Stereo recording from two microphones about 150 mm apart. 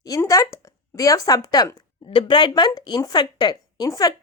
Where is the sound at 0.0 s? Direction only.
20° left (ahead or behind).